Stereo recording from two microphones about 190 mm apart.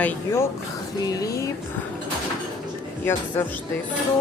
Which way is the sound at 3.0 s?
10° left (ahead or behind).